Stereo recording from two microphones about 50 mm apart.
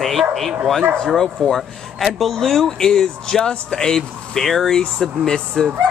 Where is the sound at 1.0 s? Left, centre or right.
Centre.